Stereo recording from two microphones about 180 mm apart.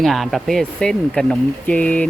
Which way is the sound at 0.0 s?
Centre (ahead or behind).